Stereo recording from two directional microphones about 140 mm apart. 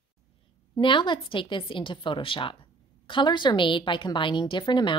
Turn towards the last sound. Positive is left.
turn(degrees=35)  # may be behind; listen again after turning